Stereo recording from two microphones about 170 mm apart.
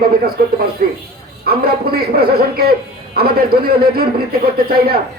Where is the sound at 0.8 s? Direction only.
55° right (ahead or behind).